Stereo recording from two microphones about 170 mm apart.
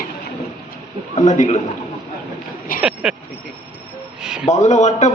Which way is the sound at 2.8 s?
5° right (ahead or behind).